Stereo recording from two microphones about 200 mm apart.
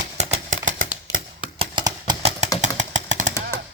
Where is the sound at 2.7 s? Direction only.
65° right (ahead or behind).